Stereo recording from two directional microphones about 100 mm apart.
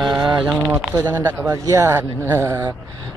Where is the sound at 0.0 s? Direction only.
50° right (ahead or behind).